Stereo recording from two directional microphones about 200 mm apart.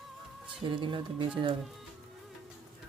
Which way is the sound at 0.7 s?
25° right (ahead or behind).